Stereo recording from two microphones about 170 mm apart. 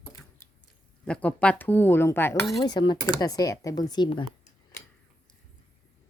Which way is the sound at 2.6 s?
25° left (ahead or behind).